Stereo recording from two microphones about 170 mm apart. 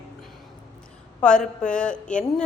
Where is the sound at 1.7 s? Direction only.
5° left (ahead or behind).